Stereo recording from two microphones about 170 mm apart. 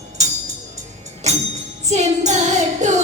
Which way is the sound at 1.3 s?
40° right (ahead or behind).